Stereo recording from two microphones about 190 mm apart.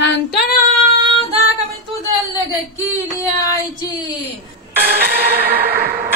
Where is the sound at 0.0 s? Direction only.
60° left (ahead or behind).